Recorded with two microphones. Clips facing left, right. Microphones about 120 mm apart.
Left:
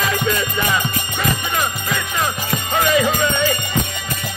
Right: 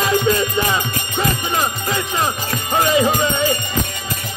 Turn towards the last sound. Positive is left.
turn(degrees=-25)  # may be behind; listen again after turning